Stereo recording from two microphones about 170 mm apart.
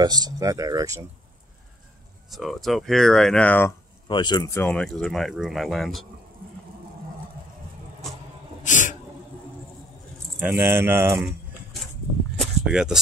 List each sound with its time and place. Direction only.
0.0 s speech: 25° right (ahead or behind)
2.3 s speech: centre (ahead or behind)
4.1 s speech: 25° left (ahead or behind)
4.6 s speech: 5° left (ahead or behind)
8.6 s a sound: 45° left (ahead or behind)
10.4 s speech: 15° right (ahead or behind)
12.4 s a sound: 5° right (ahead or behind)